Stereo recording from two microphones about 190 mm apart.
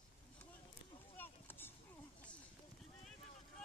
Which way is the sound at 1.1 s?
10° left (ahead or behind).